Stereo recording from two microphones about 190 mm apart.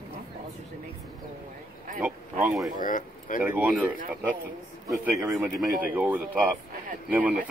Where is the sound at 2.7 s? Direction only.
45° left (ahead or behind).